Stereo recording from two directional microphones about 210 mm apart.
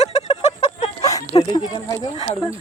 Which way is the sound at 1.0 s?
15° left (ahead or behind).